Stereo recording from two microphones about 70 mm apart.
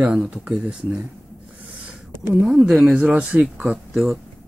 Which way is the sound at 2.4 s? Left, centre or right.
Centre.